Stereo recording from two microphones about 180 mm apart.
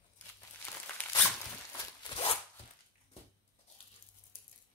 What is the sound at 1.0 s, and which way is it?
Crumpling, 10° left (ahead or behind).